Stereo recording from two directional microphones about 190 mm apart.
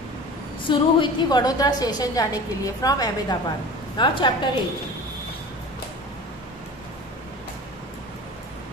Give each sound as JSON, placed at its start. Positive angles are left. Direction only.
{"t": 0.7, "sound": "a woman's voice", "side_deg": 25}